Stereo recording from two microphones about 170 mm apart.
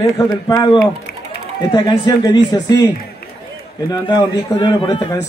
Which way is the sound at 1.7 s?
25° left (ahead or behind).